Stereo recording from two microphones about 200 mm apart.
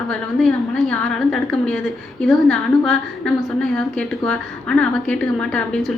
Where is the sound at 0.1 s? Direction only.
5° left (ahead or behind).